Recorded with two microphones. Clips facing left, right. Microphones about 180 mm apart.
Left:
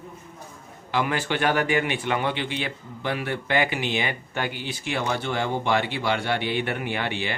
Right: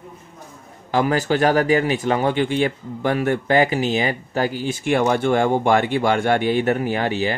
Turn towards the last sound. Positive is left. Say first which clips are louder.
# right 7 dB
turn(degrees=-40)  # may be behind; listen again after turning